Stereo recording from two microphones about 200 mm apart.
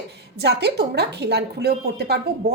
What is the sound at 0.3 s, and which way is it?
A woman's voice, 55° right (ahead or behind).